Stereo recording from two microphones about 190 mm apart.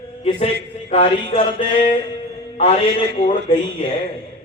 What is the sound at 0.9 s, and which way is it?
A man's voice, 30° left (ahead or behind).